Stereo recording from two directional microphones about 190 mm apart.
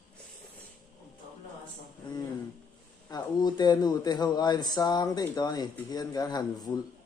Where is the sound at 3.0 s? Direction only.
20° left (ahead or behind).